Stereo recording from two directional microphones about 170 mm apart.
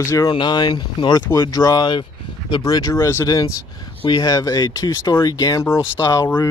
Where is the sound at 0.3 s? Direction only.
25° left (ahead or behind).